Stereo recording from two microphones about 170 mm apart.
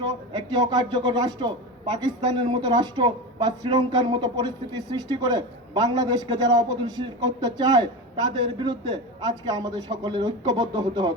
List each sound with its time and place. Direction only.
0.0 s a man's voice: 25° right (ahead or behind)